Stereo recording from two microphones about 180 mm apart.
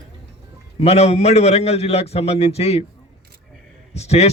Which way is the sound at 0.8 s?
35° left (ahead or behind).